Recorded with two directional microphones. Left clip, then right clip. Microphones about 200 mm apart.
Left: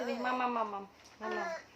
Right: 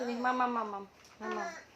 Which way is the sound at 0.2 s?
30° right (ahead or behind).